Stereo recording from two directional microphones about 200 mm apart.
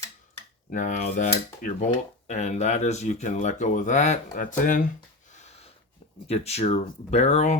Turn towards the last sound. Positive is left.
turn(degrees=35)  # may be behind; listen again after turning